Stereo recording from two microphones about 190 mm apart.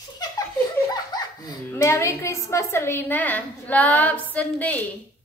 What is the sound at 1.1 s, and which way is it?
Speech, 20° left (ahead or behind).